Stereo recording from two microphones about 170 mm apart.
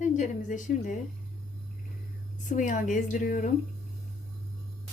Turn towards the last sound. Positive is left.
turn(degrees=50)  # may be behind; listen again after turning